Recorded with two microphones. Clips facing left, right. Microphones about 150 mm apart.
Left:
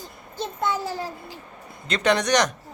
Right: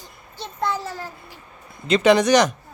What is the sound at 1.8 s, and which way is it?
Speech, 5° right (ahead or behind).